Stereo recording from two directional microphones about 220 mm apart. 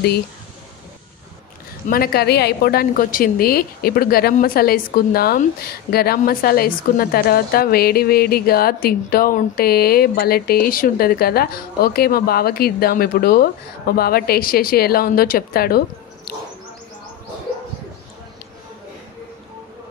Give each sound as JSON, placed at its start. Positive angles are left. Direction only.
{"t": 1.9, "sound": "a woman's voice", "side_deg": 45}